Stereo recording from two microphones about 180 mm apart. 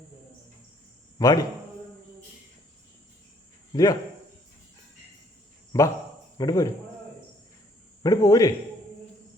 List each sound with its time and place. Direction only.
1.2 s a man's voice: 20° left (ahead or behind)
3.7 s speech: 20° left (ahead or behind)
5.7 s a man's voice: 15° left (ahead or behind)
8.0 s a man's voice: 20° left (ahead or behind)